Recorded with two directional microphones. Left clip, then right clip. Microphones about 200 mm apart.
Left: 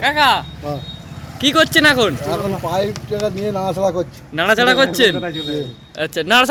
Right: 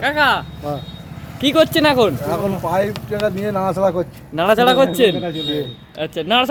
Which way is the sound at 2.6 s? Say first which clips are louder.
Right 2 dB; centre (ahead or behind).